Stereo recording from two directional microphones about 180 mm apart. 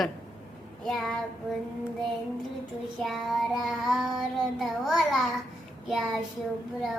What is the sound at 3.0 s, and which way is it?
Child singing, centre (ahead or behind).